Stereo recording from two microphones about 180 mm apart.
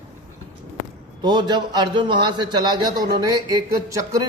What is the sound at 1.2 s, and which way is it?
A man's voice, 25° right (ahead or behind).